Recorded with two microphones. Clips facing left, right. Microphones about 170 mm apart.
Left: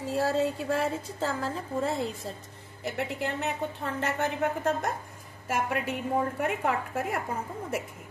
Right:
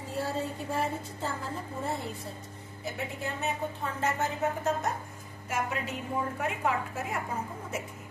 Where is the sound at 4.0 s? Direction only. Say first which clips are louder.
Left 1 dB; 60° left (ahead or behind).